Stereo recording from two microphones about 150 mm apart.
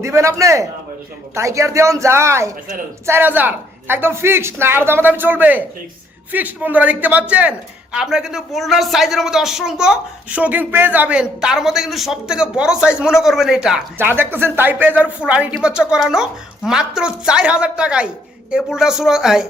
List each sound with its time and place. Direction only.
0.0 s a woman's voice: 20° right (ahead or behind); by 19.5 s 5° right (ahead or behind)